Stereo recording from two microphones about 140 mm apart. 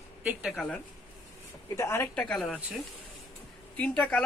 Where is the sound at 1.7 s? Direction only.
20° left (ahead or behind).